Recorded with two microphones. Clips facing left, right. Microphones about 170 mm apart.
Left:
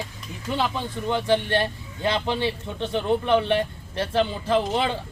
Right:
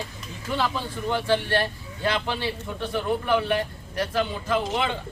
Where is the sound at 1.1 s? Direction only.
20° left (ahead or behind).